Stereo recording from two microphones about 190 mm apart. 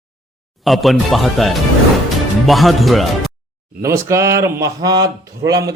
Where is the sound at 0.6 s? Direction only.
Centre (ahead or behind).